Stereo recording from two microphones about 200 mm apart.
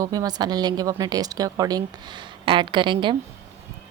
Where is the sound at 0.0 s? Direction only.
20° right (ahead or behind).